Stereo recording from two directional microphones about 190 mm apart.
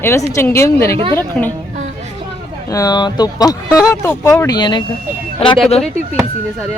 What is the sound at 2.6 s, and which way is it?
Speech, 20° left (ahead or behind).